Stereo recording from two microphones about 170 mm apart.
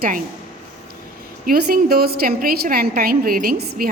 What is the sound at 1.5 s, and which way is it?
A woman's voice, 60° right (ahead or behind).